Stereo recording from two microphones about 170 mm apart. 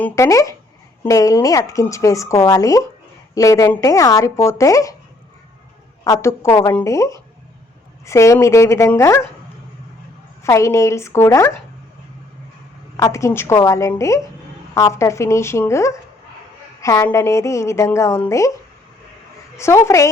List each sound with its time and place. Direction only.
0.0 s speech: 20° left (ahead or behind)
6.1 s a woman's voice: 15° left (ahead or behind)
10.4 s a woman's voice: 15° left (ahead or behind)
13.0 s a woman's voice: 20° left (ahead or behind)
19.5 s a woman's voice: 15° left (ahead or behind)